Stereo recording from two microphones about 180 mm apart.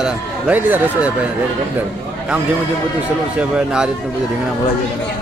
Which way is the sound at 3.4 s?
5° right (ahead or behind).